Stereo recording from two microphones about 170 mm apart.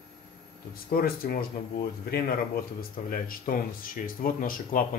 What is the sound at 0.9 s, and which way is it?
A man's voice, 60° left (ahead or behind).